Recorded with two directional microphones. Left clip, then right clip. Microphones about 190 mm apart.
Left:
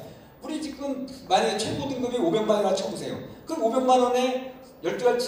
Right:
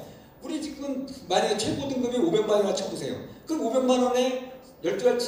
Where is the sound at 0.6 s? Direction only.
35° right (ahead or behind).